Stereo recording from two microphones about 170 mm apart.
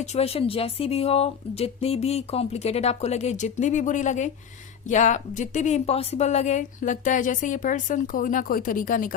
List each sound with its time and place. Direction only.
0.0 s a woman's voice: 40° left (ahead or behind); by 9.1 s 55° left (ahead or behind)